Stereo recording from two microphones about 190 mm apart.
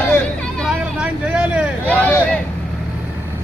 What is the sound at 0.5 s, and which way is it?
Vehicle, 5° right (ahead or behind).